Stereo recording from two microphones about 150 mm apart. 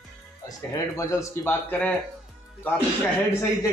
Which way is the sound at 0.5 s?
20° left (ahead or behind).